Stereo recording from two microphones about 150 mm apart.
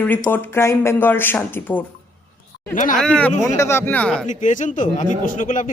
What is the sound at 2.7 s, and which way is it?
Speech, 60° left (ahead or behind).